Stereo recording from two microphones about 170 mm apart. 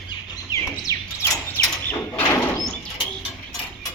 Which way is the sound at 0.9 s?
15° left (ahead or behind).